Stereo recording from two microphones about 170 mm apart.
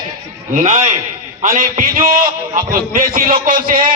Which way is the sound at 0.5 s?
45° right (ahead or behind).